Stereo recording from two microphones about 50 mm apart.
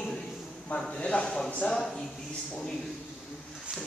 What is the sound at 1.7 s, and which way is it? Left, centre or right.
Speech, centre.